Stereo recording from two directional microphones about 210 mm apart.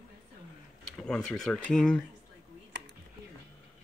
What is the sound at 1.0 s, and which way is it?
Speech, 5° left (ahead or behind).